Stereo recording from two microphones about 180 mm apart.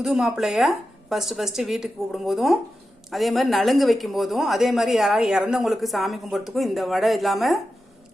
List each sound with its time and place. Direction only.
0.0 s speech: 5° right (ahead or behind)